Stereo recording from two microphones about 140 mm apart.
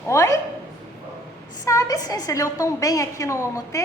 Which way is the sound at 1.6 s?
25° left (ahead or behind).